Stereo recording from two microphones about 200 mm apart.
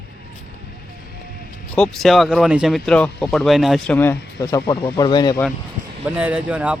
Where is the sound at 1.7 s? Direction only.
5° left (ahead or behind); by 5.4 s 20° left (ahead or behind).